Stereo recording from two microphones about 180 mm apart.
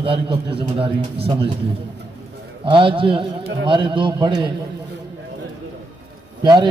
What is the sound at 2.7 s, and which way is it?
A man's voice, 30° right (ahead or behind).